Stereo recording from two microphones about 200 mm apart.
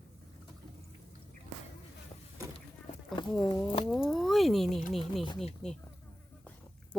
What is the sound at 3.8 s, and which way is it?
Speech, centre (ahead or behind).